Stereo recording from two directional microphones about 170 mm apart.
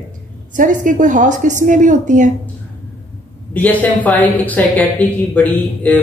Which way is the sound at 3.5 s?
10° left (ahead or behind).